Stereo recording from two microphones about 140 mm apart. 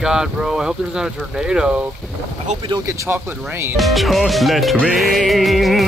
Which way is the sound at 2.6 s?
30° right (ahead or behind).